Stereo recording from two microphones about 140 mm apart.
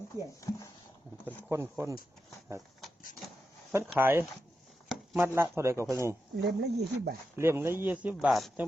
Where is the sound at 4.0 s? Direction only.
15° right (ahead or behind).